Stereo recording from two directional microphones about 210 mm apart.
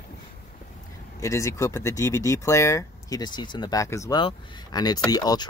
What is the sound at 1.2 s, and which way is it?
Speech, 15° left (ahead or behind).